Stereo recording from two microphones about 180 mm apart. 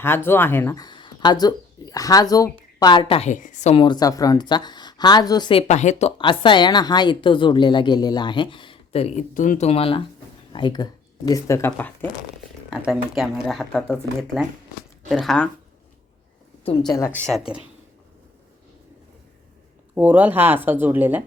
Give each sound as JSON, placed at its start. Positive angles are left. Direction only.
{"t": 0.3, "sound": "speech", "side_deg": 10}
{"t": 12.7, "sound": "speech", "side_deg": 0}
{"t": 16.6, "sound": "speech", "side_deg": 25}
{"t": 17.2, "sound": "speech", "side_deg": 0}
{"t": 20.0, "sound": "speech", "side_deg": -10}